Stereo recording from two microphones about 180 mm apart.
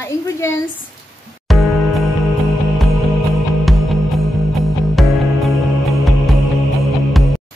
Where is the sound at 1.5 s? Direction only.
Centre (ahead or behind).